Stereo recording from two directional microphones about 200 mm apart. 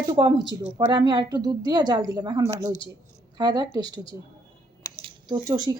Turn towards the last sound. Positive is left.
turn(degrees=-20)  # may be behind; listen again after turning